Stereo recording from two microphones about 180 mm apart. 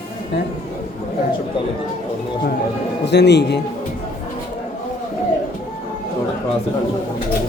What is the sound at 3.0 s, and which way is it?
Speech, 70° left (ahead or behind).